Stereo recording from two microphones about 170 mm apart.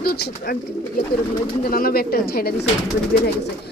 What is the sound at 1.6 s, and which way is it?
A woman's voice, 60° left (ahead or behind).